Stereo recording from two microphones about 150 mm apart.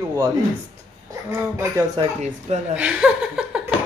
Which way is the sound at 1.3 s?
15° right (ahead or behind).